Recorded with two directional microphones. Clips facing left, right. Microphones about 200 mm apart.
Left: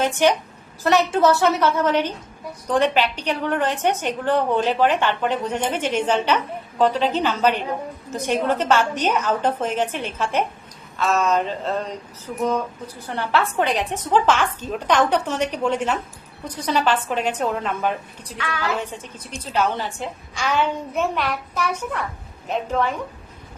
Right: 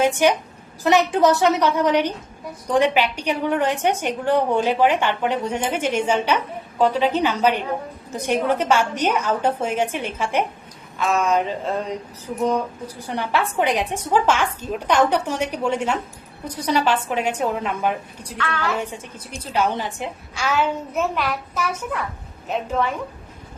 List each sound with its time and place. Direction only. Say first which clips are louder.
0.0 s a woman's voice: right 1 dB; 10° right (ahead or behind)
18.3 s a woman's voice: right 1 dB; 10° left (ahead or behind)
18.8 s a woman's voice: right 1 dB; 10° right (ahead or behind)
20.4 s a woman's voice: even; 5° right (ahead or behind)